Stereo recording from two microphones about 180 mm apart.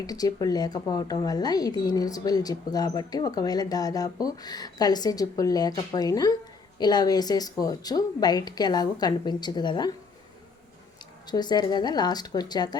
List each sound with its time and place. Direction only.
0.0 s speech: 20° left (ahead or behind)
11.3 s speech: 25° left (ahead or behind)